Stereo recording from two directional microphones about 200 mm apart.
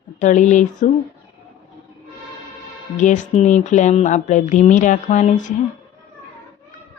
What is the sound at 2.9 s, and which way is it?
Speech, 40° left (ahead or behind).